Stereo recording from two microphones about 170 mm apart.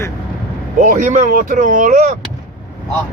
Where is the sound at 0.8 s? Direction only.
50° right (ahead or behind).